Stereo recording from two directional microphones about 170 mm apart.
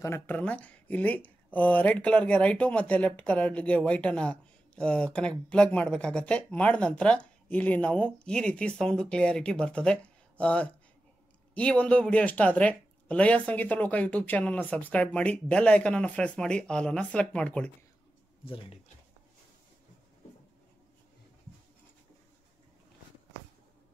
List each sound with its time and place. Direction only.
0.0 s speech: 15° left (ahead or behind)
18.4 s speech: 30° left (ahead or behind)